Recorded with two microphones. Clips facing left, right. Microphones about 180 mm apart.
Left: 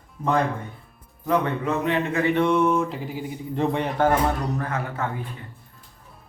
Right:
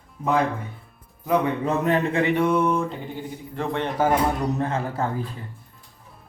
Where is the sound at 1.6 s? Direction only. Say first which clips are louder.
Right 2 dB; 40° right (ahead or behind).